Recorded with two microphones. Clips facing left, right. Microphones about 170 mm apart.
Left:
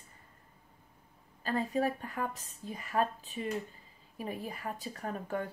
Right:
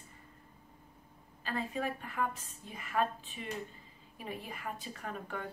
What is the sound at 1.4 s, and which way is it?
A woman's voice, 40° left (ahead or behind).